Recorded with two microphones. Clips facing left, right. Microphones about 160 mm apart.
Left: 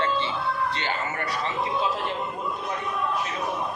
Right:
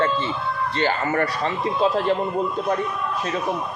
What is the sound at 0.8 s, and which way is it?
A man's voice, 55° right (ahead or behind).